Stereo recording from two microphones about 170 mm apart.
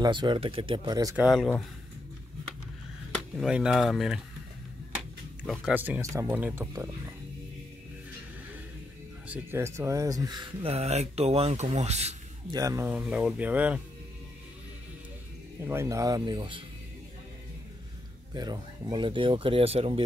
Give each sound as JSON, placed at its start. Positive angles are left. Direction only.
{"t": 0.0, "sound": "speech", "side_deg": -25}
{"t": 1.1, "sound": "speech", "side_deg": 0}
{"t": 3.3, "sound": "speech", "side_deg": -5}
{"t": 5.4, "sound": "speech", "side_deg": -5}
{"t": 9.3, "sound": "speech", "side_deg": -15}
{"t": 12.4, "sound": "speech", "side_deg": -20}
{"t": 15.6, "sound": "speech", "side_deg": -15}
{"t": 18.3, "sound": "speech", "side_deg": -25}